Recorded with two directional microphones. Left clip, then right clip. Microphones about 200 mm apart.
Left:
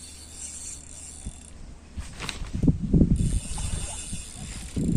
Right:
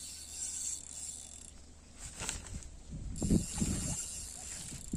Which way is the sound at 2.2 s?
35° right (ahead or behind).